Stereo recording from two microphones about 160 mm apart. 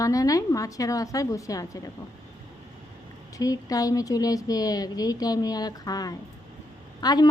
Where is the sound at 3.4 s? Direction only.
20° left (ahead or behind).